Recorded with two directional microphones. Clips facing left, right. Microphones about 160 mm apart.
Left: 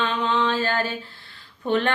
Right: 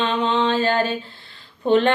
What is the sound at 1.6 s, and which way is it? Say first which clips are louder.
Speech: right 6 dB; 20° right (ahead or behind).